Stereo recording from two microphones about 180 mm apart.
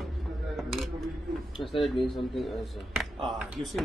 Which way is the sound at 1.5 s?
30° left (ahead or behind).